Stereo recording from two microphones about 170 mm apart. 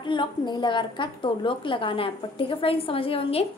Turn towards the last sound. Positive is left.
turn(degrees=35)  # may be behind; listen again after turning